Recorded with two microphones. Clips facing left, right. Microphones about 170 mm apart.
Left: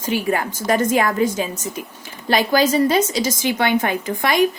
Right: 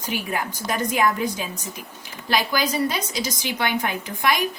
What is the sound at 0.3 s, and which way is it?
A woman's voice, 50° left (ahead or behind).